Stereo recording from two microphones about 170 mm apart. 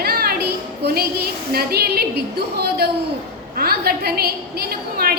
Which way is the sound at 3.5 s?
65° right (ahead or behind).